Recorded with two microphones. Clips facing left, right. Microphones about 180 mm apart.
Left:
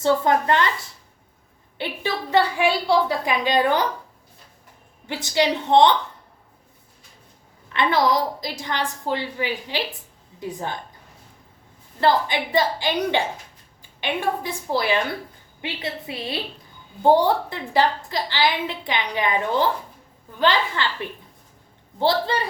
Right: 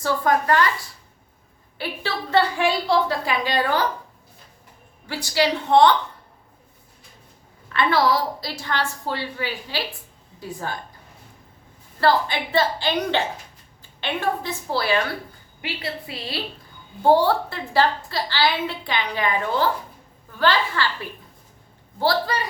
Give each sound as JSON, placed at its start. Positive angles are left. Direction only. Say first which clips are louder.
{"t": 0.0, "sound": "a woman's voice", "louder": "left 2 dB", "side_deg": 25}
{"t": 1.8, "sound": "a woman's voice", "louder": "left 2 dB", "side_deg": 15}
{"t": 5.0, "sound": "a woman's voice", "louder": "left 1 dB", "side_deg": 20}
{"t": 7.7, "sound": "a woman's voice", "louder": "even", "side_deg": 20}
{"t": 11.9, "sound": "a woman's voice", "louder": "even", "side_deg": 15}